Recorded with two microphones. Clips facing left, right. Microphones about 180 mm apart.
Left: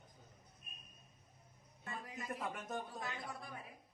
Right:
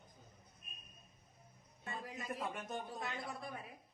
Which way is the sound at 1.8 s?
30° right (ahead or behind).